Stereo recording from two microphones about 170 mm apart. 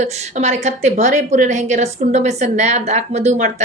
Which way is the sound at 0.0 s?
40° right (ahead or behind).